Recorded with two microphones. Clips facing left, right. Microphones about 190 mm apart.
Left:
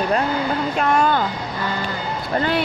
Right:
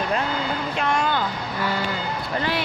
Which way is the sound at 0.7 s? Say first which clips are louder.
Left 5 dB; 45° left (ahead or behind).